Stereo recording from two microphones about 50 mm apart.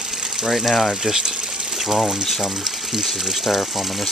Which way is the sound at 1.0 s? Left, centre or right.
Centre.